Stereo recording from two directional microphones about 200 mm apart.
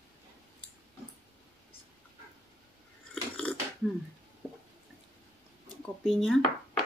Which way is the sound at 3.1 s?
5° left (ahead or behind).